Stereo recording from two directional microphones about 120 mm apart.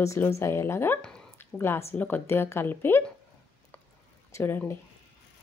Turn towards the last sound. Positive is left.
turn(degrees=20)  # may be behind; listen again after turning